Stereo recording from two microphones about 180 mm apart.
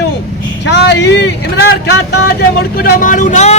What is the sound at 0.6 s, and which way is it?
Speech, 75° left (ahead or behind).